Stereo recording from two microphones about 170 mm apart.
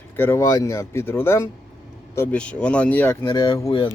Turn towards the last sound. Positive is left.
turn(degrees=30)  # may be behind; listen again after turning